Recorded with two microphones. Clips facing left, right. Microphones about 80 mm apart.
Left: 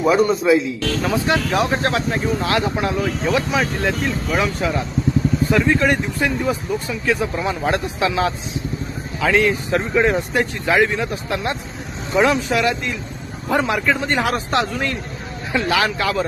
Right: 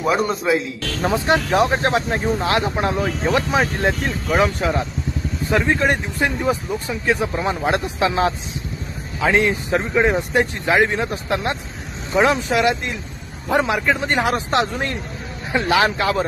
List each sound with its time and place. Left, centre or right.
0.0 s speech: centre
1.0 s speech: right